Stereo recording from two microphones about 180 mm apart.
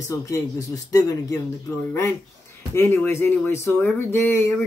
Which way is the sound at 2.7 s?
10° left (ahead or behind).